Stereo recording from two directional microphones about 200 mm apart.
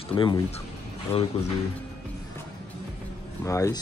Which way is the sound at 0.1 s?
25° left (ahead or behind).